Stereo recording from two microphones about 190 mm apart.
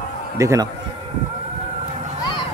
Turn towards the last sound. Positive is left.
turn(degrees=-15)  # may be behind; listen again after turning